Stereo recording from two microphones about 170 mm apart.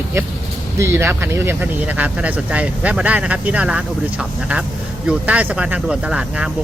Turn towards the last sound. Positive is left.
turn(degrees=-5)  # may be behind; listen again after turning